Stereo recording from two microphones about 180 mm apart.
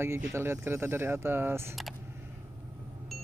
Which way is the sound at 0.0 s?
15° right (ahead or behind).